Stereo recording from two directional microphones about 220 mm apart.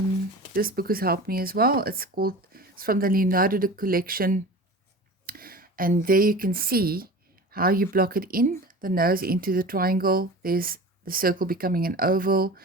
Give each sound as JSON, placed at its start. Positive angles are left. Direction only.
{"t": 0.5, "sound": "speech", "side_deg": -40}